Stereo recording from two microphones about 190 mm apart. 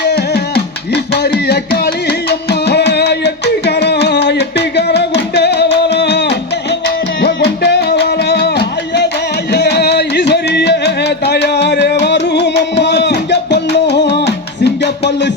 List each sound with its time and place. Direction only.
0.0 s music: 60° left (ahead or behind)